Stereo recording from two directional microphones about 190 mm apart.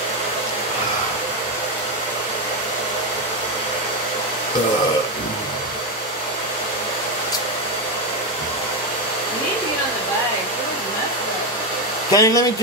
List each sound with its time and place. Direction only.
12.1 s speech: 20° left (ahead or behind)